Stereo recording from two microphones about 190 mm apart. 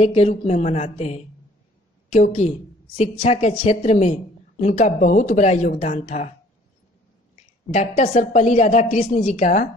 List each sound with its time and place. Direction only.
0.0 s a woman's voice: 35° left (ahead or behind)
7.7 s a woman's voice: 35° left (ahead or behind)